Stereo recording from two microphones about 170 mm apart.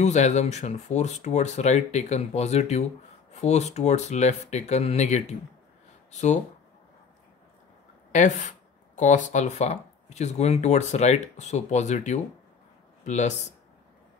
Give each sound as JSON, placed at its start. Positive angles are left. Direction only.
{"t": 0.0, "sound": "speech", "side_deg": 45}
{"t": 8.1, "sound": "a sound", "side_deg": 50}
{"t": 9.3, "sound": "speech", "side_deg": 45}